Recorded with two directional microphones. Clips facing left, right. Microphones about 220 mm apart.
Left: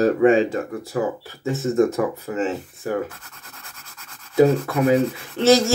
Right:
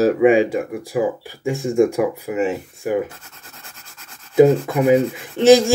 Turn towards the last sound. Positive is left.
turn(degrees=-15)  # may be behind; listen again after turning